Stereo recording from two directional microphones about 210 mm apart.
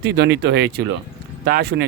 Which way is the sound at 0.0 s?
55° right (ahead or behind).